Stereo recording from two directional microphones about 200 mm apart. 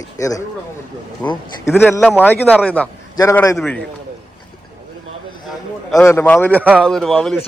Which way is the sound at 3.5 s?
Centre (ahead or behind).